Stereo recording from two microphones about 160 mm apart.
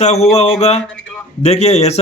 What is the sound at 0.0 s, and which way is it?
Speech, 40° left (ahead or behind).